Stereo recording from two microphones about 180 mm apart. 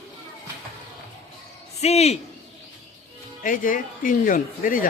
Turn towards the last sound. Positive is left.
turn(degrees=50)  # may be behind; listen again after turning